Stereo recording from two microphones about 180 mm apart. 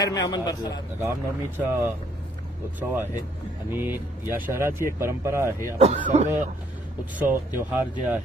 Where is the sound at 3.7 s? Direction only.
10° right (ahead or behind).